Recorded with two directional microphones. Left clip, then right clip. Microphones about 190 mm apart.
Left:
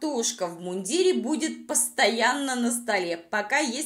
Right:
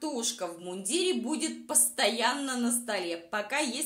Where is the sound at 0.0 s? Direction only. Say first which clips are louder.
Left 6 dB; 20° left (ahead or behind).